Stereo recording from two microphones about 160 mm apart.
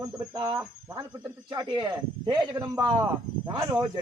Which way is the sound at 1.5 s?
25° right (ahead or behind).